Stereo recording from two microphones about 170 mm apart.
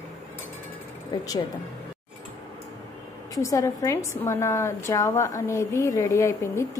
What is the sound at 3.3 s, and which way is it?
A woman's voice, 20° left (ahead or behind).